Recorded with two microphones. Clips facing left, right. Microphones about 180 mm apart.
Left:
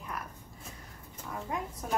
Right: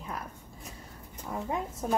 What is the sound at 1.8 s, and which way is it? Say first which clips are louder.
Speech: right 4 dB; 25° right (ahead or behind).